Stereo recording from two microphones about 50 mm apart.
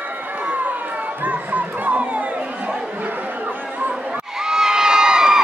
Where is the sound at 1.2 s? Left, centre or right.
Right.